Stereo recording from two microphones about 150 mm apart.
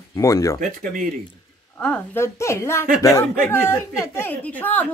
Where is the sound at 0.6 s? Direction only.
60° right (ahead or behind).